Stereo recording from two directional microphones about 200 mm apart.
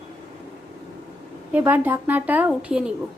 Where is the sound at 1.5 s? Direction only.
10° right (ahead or behind).